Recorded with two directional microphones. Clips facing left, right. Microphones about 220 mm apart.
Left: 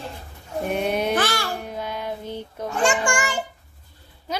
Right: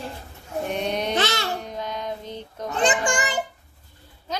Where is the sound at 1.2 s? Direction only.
25° right (ahead or behind).